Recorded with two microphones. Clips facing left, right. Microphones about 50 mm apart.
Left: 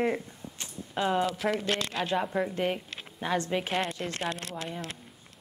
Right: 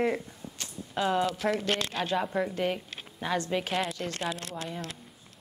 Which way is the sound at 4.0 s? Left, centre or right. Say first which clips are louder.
Even; centre.